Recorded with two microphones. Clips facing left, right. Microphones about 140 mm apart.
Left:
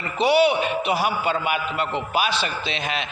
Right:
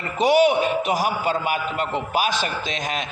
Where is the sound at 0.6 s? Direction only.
45° right (ahead or behind).